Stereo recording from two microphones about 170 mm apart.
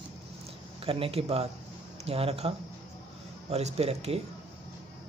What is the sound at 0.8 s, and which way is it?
Speech, 35° right (ahead or behind).